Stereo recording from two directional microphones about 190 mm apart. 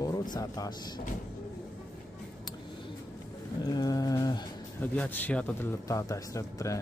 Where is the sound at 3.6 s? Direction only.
20° left (ahead or behind).